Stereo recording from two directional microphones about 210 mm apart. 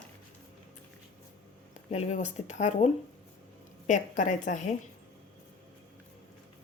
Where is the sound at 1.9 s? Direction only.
30° left (ahead or behind).